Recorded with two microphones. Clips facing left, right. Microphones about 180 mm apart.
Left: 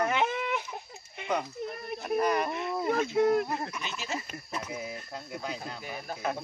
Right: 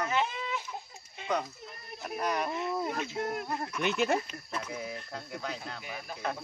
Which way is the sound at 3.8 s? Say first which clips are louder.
Right 10 dB; 60° right (ahead or behind).